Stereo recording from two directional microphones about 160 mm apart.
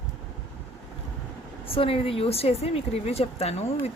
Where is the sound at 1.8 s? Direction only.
35° left (ahead or behind).